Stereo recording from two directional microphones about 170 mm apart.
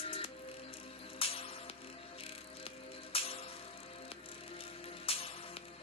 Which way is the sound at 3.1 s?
35° left (ahead or behind).